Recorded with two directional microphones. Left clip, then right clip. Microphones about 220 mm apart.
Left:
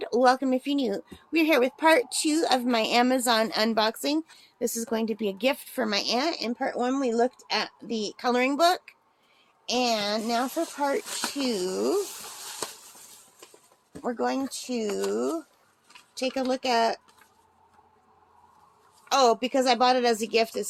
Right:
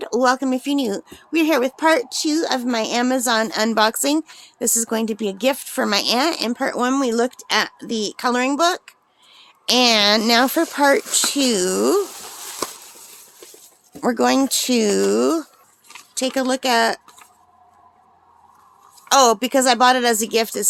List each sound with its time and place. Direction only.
0.0 s a woman's voice: 20° right (ahead or behind)
9.6 s speech: 40° right (ahead or behind)
14.0 s speech: 50° right (ahead or behind)
15.9 s speech: 30° right (ahead or behind)
19.0 s speech: 35° right (ahead or behind)